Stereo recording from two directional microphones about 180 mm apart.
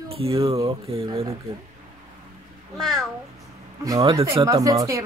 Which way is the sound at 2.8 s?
Centre (ahead or behind).